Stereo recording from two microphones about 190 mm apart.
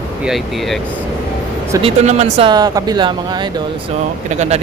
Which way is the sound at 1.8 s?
35° right (ahead or behind).